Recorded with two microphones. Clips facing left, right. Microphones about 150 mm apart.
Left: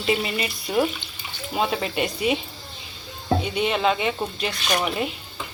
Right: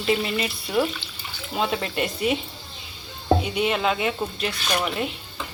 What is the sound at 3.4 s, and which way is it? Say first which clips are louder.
Speech: left 1 dB; 5° right (ahead or behind).